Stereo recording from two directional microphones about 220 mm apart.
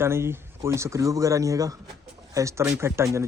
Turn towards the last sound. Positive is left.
turn(degrees=-15)  # may be behind; listen again after turning